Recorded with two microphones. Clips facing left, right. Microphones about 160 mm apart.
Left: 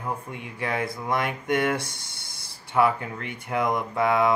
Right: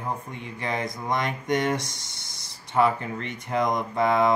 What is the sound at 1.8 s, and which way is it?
Speech, 55° left (ahead or behind).